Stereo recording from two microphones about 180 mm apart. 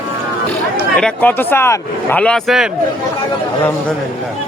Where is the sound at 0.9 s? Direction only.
5° left (ahead or behind).